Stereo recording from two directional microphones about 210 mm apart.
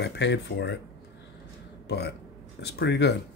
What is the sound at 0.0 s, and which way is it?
Speech, 55° left (ahead or behind).